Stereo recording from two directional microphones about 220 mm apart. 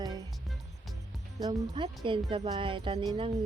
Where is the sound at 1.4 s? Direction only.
20° right (ahead or behind).